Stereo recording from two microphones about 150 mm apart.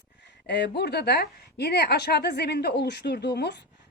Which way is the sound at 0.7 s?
90° left.